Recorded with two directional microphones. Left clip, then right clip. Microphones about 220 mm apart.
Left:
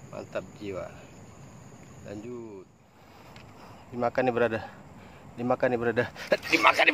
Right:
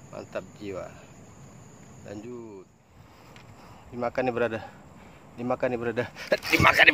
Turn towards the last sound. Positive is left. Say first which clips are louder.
# right 3 dB
turn(degrees=-10)  # may be behind; listen again after turning